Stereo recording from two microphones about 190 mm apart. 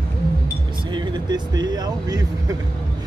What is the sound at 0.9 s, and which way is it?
Speech, 25° right (ahead or behind).